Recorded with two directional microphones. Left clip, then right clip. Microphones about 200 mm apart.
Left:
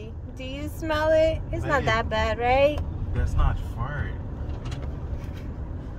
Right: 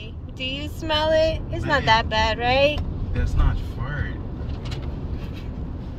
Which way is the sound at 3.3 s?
45° left (ahead or behind).